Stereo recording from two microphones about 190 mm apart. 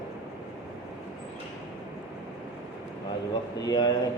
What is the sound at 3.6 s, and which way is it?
Speech, 20° left (ahead or behind).